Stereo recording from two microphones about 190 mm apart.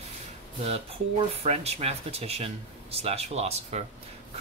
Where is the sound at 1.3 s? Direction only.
35° right (ahead or behind).